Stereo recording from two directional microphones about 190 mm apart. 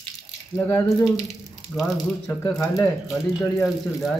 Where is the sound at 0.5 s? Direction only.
10° left (ahead or behind).